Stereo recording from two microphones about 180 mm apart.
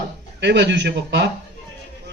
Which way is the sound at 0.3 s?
75° right (ahead or behind).